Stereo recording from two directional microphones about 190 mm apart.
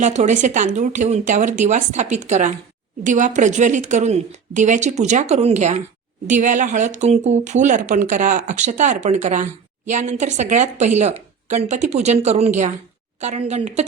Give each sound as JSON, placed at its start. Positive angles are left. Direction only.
{"t": 0.0, "sound": "speech", "side_deg": -40}